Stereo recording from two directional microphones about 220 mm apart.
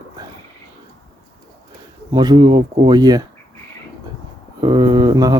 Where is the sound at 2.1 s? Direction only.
20° right (ahead or behind).